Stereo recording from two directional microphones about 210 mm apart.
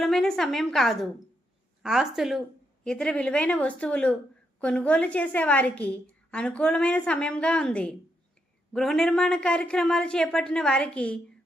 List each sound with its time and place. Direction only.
0.0 s a woman's voice: centre (ahead or behind)